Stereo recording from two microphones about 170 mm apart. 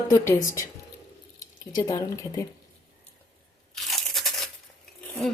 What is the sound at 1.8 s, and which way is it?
Speech, 20° left (ahead or behind).